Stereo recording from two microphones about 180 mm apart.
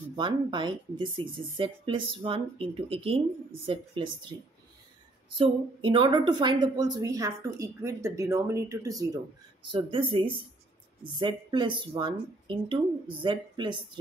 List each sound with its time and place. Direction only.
0.1 s a woman's voice: 25° right (ahead or behind)
5.4 s a woman's voice: 30° right (ahead or behind)